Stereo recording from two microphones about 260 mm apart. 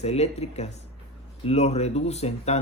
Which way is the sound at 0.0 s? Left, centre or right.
Left.